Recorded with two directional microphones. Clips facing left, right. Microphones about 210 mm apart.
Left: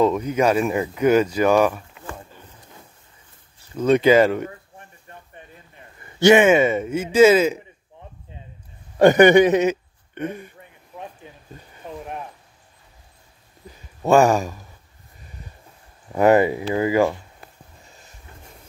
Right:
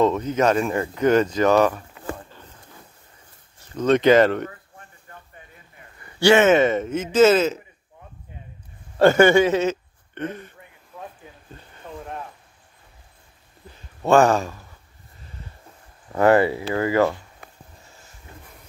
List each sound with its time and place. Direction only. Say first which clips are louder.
0.0 s speech: left 1 dB; 10° left (ahead or behind)
3.7 s speech: even; 10° left (ahead or behind)
4.5 s a sound: left 3 dB; 20° left (ahead or behind)
6.1 s speech: left 2 dB; 15° left (ahead or behind)
8.9 s speech: left 2 dB; 15° left (ahead or behind)
11.2 s a sound: left 2 dB; 20° left (ahead or behind)
14.0 s speech: left 1 dB; 10° left (ahead or behind)
16.1 s speech: left 1 dB; 15° left (ahead or behind)
17.8 s a sound: left 1 dB; 20° left (ahead or behind)